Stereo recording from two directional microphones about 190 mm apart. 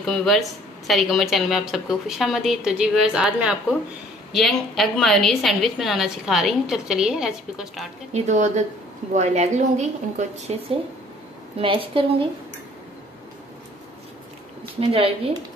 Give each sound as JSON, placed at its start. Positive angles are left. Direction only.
{"t": 0.1, "sound": "a woman's voice", "side_deg": 0}
{"t": 8.1, "sound": "a woman's voice", "side_deg": -40}
{"t": 14.8, "sound": "a woman's voice", "side_deg": -30}